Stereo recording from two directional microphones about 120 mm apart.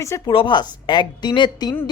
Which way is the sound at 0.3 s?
40° left (ahead or behind).